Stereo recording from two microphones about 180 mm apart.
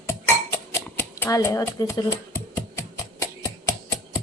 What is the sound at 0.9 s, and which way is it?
Typewriter, 10° left (ahead or behind).